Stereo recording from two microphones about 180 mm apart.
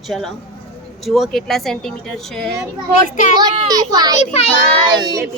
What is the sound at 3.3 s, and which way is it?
A child's voice, 20° right (ahead or behind).